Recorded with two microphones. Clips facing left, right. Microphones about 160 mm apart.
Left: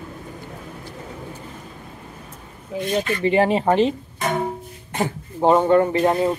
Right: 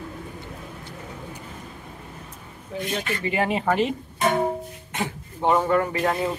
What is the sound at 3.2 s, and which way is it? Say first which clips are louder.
Speech: left 7 dB; 30° left (ahead or behind).